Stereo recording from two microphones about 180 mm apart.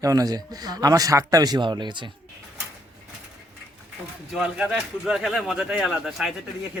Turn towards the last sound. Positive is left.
turn(degrees=0)  # may be behind; listen again after turning